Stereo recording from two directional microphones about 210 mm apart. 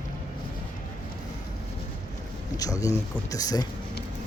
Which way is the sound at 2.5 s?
15° left (ahead or behind).